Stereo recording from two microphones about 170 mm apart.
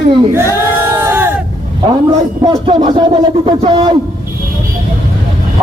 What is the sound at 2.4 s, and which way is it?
A man's voice, 30° right (ahead or behind).